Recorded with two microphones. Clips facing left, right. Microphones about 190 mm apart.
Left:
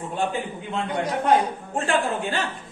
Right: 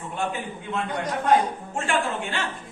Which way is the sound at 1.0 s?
Centre (ahead or behind).